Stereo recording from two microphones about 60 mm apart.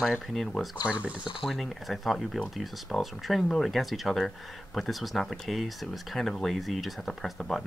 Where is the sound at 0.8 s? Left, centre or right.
Right.